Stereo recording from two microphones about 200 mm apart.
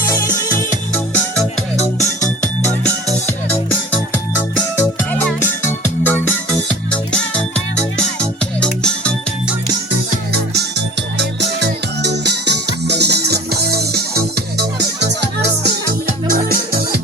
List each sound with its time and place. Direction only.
0.0 s music: 15° left (ahead or behind)
4.8 s music: 10° left (ahead or behind)
10.5 s music: 60° right (ahead or behind)